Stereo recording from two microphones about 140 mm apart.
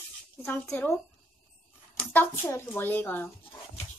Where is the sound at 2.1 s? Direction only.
15° left (ahead or behind).